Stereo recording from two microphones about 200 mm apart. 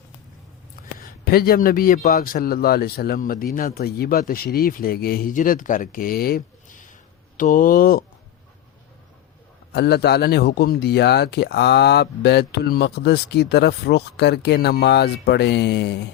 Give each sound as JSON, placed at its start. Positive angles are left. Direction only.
{"t": 0.9, "sound": "a man's voice", "side_deg": 45}
{"t": 9.7, "sound": "speech", "side_deg": 55}